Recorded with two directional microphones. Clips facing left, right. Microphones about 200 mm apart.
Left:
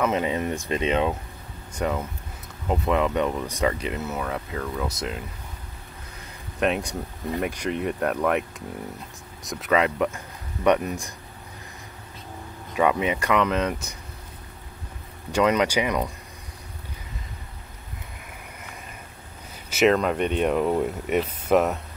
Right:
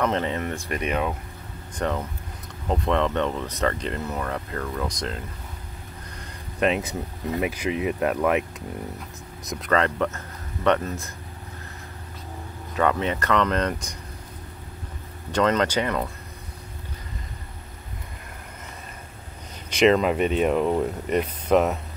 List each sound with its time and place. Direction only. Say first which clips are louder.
0.0 s speech: left 1 dB; 10° left (ahead or behind)
1.7 s speech: even; 5° left (ahead or behind)
6.6 s speech: right 1 dB; centre (ahead or behind); by 11.1 s 15° left (ahead or behind)
12.7 s speech: left 1 dB; 10° left (ahead or behind)
15.3 s speech: left 1 dB; 10° left (ahead or behind)
19.7 s speech: right 1 dB; centre (ahead or behind)